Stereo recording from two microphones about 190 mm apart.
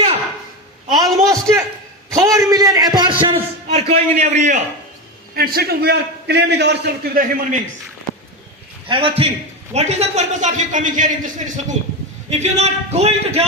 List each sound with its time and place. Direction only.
1.2 s a man's voice: 15° right (ahead or behind); by 4.6 s 40° right (ahead or behind)
5.3 s a man's voice: 50° right (ahead or behind)
8.9 s a man's voice: 30° right (ahead or behind)